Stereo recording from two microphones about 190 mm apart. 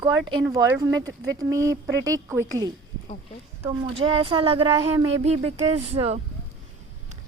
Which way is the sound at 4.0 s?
30° right (ahead or behind).